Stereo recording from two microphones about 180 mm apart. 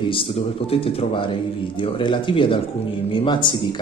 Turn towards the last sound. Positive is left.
turn(degrees=25)  # may be behind; listen again after turning